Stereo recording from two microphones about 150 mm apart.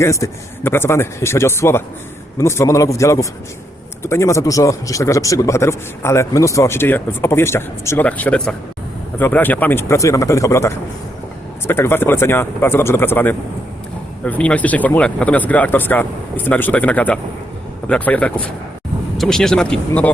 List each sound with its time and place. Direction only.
0.0 s a man's voice: 20° left (ahead or behind)